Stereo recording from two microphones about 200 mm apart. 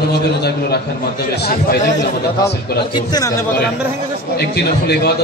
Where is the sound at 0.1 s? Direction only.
55° left (ahead or behind).